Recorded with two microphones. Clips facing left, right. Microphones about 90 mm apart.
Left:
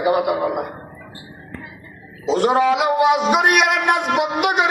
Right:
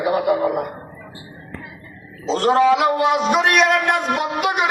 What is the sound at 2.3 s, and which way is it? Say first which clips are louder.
Speech: right 1 dB; 15° left (ahead or behind).